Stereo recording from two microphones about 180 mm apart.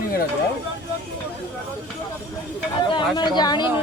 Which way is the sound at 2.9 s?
25° left (ahead or behind).